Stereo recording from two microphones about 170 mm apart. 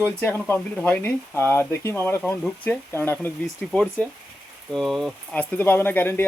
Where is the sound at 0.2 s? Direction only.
15° left (ahead or behind).